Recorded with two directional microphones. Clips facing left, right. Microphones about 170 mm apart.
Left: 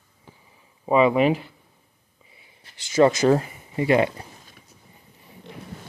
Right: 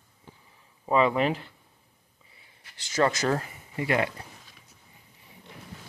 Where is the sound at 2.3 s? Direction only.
20° left (ahead or behind).